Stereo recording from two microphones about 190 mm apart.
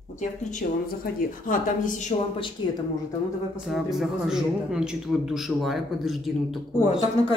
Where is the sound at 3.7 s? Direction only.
Centre (ahead or behind).